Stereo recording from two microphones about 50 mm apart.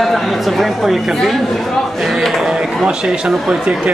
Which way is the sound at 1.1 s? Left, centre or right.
Centre.